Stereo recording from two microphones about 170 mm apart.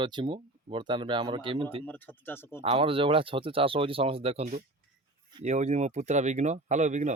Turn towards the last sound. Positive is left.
turn(degrees=-45)  # may be behind; listen again after turning